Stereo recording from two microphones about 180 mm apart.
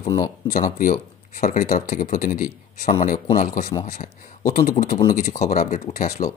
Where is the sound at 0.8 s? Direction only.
50° left (ahead or behind).